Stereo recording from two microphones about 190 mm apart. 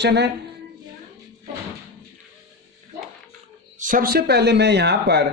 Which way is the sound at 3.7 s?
45° right (ahead or behind).